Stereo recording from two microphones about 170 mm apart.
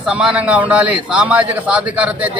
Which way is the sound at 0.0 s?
5° right (ahead or behind).